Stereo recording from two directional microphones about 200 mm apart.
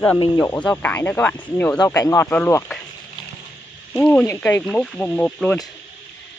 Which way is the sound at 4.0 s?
10° left (ahead or behind).